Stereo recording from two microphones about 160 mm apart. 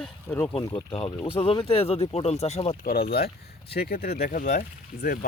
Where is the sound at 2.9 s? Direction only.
70° left (ahead or behind).